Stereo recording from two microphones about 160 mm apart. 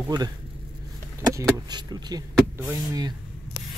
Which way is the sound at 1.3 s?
25° right (ahead or behind).